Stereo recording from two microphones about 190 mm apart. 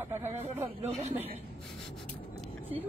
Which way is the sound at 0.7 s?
30° right (ahead or behind).